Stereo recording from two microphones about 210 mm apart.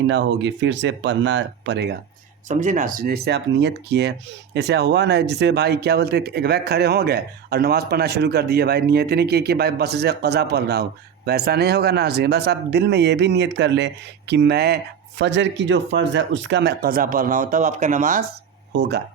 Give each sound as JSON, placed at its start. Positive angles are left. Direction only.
{"t": 0.1, "sound": "speech", "side_deg": -60}
{"t": 2.5, "sound": "speech", "side_deg": -35}
{"t": 18.7, "sound": "speech", "side_deg": -55}